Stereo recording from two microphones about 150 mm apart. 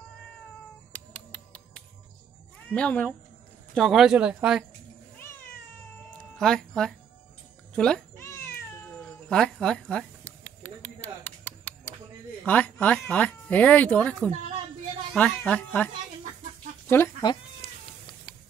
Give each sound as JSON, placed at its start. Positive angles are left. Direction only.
{"t": 0.9, "sound": "finger snapping", "side_deg": 10}
{"t": 2.7, "sound": "speech", "side_deg": 10}
{"t": 6.1, "sound": "music", "side_deg": 5}
{"t": 7.7, "sound": "speech", "side_deg": 5}
{"t": 8.2, "sound": "cat", "side_deg": 15}
{"t": 12.4, "sound": "speech", "side_deg": 10}
{"t": 17.0, "sound": "speech", "side_deg": 15}
{"t": 18.3, "sound": "a sound", "side_deg": 35}